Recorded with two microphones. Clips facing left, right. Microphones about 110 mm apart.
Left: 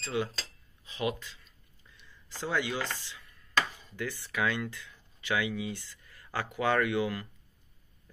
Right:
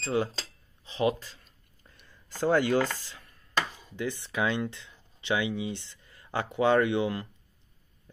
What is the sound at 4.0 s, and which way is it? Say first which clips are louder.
Speech: right 3 dB; 20° right (ahead or behind).